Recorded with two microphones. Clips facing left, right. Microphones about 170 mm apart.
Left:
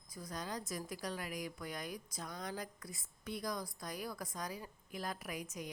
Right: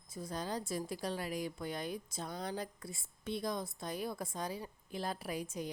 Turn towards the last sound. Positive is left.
turn(degrees=-30)  # may be behind; listen again after turning